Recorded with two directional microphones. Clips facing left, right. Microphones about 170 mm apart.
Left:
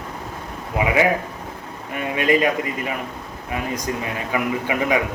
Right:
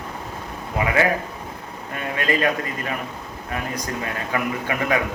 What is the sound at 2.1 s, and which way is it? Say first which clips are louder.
Speech: left 4 dB; 15° left (ahead or behind).